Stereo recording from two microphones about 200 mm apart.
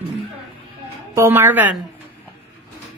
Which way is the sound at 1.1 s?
10° right (ahead or behind).